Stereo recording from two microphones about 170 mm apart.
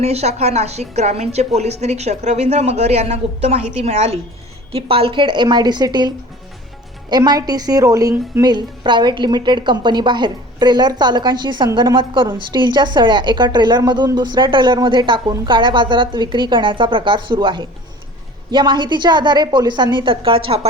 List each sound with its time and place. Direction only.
0.0 s a woman's voice: 40° right (ahead or behind)